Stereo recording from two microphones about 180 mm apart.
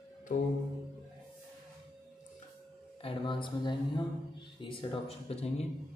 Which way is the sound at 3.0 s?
30° left (ahead or behind).